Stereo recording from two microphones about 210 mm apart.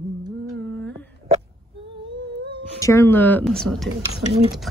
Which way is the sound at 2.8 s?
15° left (ahead or behind).